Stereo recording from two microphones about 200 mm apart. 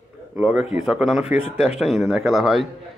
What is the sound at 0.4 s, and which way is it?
Speech, 5° right (ahead or behind).